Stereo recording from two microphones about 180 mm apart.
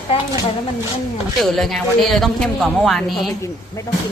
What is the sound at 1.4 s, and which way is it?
Speech, centre (ahead or behind).